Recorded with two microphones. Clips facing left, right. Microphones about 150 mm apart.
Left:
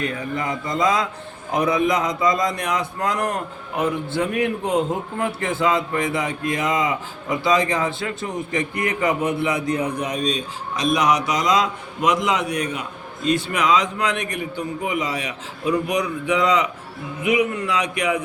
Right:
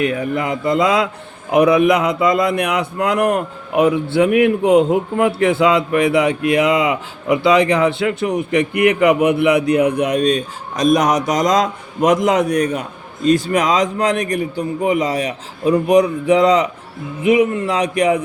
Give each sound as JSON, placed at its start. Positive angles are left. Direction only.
{"t": 0.0, "sound": "a man's voice", "side_deg": -60}